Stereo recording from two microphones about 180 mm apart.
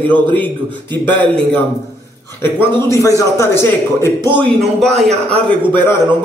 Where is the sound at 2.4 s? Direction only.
15° left (ahead or behind).